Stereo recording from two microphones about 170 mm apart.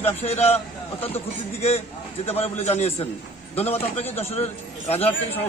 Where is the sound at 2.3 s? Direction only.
35° left (ahead or behind).